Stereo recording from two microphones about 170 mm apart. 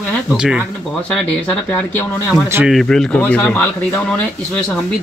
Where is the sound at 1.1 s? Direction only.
10° left (ahead or behind).